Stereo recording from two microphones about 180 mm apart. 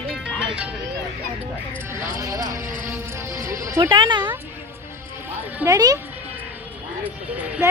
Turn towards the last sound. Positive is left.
turn(degrees=-10)  # may be behind; listen again after turning